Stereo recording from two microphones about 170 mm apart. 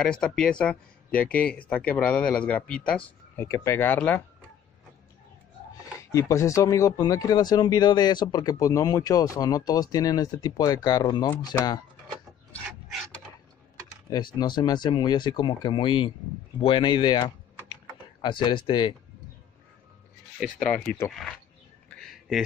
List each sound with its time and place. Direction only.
0.0 s speech: 5° left (ahead or behind)
6.1 s speech: 20° left (ahead or behind)
14.1 s speech: 25° left (ahead or behind)
18.2 s speech: 25° left (ahead or behind)
20.5 s speech: 5° left (ahead or behind)
21.8 s a sound: centre (ahead or behind)